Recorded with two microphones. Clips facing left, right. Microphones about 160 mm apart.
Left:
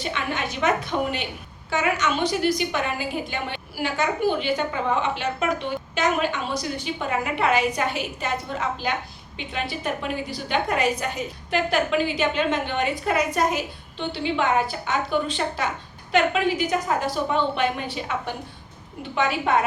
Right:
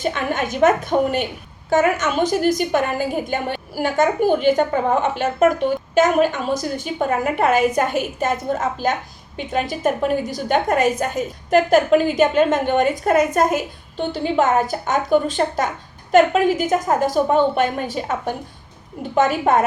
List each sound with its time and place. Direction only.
0.0 s a woman's voice: 45° right (ahead or behind)